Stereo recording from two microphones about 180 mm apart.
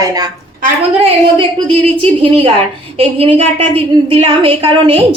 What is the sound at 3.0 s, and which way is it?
A woman's voice, 30° right (ahead or behind).